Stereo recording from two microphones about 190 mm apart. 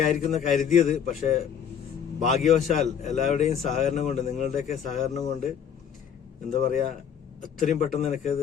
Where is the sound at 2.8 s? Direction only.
40° left (ahead or behind).